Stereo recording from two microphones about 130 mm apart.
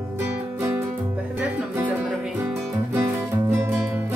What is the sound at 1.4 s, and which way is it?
Music, 10° right (ahead or behind).